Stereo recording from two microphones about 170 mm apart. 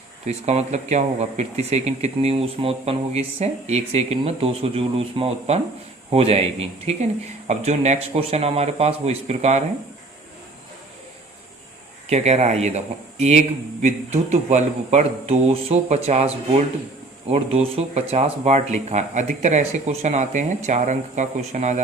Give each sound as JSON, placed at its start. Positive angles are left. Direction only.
{"t": 0.3, "sound": "speech", "side_deg": -40}
{"t": 12.0, "sound": "speech", "side_deg": -40}